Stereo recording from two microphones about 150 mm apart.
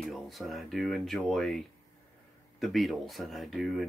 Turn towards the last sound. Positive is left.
turn(degrees=0)  # may be behind; listen again after turning